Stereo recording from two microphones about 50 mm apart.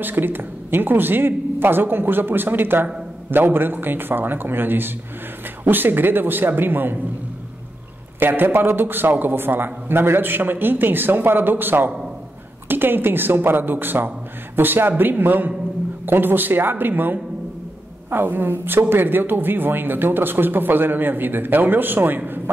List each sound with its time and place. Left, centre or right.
0.0 s speech: right
8.2 s speech: right